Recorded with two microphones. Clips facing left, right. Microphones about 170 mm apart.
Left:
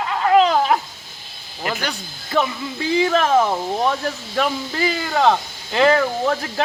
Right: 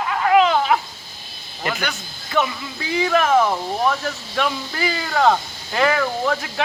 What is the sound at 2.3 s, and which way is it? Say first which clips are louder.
Speech: left 1 dB; 35° left (ahead or behind).